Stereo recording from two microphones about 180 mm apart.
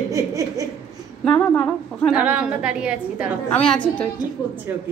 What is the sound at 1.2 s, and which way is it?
A woman's voice, 5° left (ahead or behind).